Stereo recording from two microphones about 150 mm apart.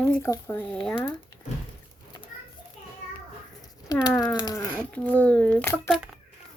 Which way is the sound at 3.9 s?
25° left (ahead or behind).